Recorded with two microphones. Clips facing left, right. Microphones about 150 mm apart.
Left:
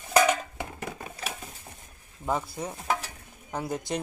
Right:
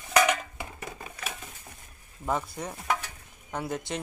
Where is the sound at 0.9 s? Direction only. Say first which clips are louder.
Left 2 dB; 35° left (ahead or behind).